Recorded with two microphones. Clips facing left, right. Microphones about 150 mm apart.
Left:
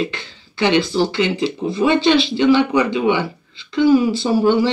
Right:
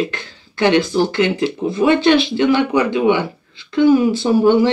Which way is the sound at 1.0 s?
55° right (ahead or behind).